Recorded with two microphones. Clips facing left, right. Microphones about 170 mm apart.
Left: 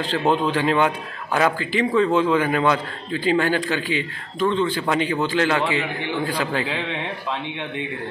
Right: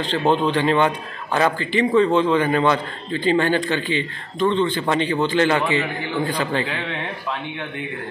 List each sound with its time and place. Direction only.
0.0 s a man's voice: 5° left (ahead or behind)
6.6 s a man's voice: 15° left (ahead or behind)